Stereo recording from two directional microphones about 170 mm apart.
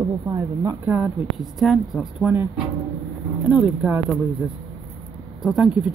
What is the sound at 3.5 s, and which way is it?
Speech, 10° right (ahead or behind).